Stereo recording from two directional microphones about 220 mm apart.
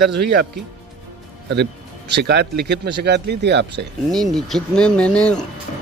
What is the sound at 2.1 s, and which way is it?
Speech, 50° right (ahead or behind).